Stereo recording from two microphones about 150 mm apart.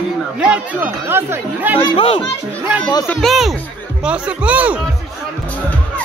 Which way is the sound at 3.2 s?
Centre (ahead or behind).